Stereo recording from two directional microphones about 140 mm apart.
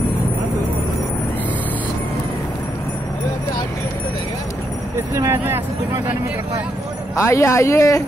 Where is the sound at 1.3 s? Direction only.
10° left (ahead or behind).